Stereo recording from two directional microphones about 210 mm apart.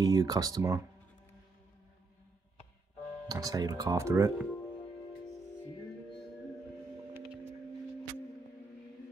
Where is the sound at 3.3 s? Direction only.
15° right (ahead or behind).